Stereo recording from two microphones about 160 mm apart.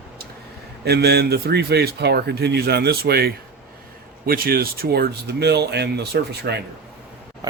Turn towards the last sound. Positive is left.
turn(degrees=-25)  # may be behind; listen again after turning